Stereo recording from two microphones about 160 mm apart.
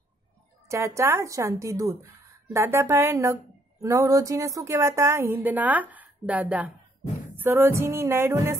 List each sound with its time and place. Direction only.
0.7 s a woman's voice: 20° right (ahead or behind)